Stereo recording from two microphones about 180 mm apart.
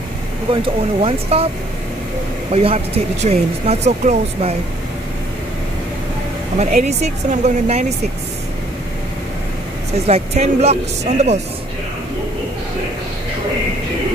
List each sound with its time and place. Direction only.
0.5 s speech: 30° right (ahead or behind)
2.5 s speech: 35° right (ahead or behind)
6.6 s speech: 40° right (ahead or behind)
10.0 s speech: 35° right (ahead or behind)